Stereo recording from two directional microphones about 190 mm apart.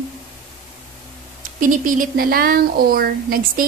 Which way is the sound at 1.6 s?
45° right (ahead or behind).